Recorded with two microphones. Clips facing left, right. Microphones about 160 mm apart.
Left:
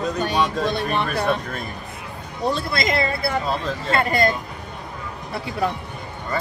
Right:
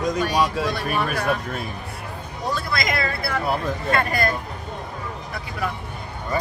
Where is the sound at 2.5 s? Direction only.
25° left (ahead or behind).